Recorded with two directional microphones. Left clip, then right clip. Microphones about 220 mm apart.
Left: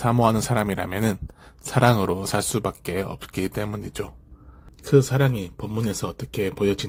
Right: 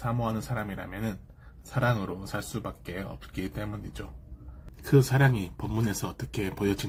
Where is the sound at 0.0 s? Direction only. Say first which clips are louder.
Left 12 dB; 55° left (ahead or behind).